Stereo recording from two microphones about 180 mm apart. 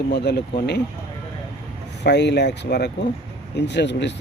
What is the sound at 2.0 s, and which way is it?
Speech, 70° left (ahead or behind).